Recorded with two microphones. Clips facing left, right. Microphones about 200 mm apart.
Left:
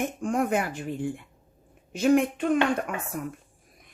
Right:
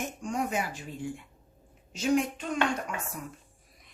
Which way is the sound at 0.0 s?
55° left (ahead or behind).